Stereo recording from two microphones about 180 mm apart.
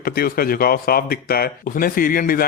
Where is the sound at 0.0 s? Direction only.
55° left (ahead or behind).